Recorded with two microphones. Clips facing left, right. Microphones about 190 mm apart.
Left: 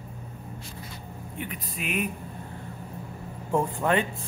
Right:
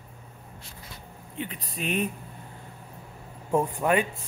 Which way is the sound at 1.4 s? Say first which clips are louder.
Right 2 dB; 30° right (ahead or behind).